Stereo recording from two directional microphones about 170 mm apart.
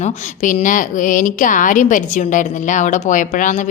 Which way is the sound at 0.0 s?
50° left (ahead or behind).